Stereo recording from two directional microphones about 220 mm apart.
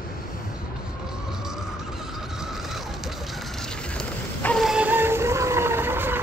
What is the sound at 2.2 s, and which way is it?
Vehicle, centre (ahead or behind).